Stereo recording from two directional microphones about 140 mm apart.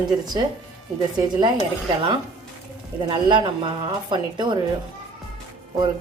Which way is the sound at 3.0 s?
35° right (ahead or behind).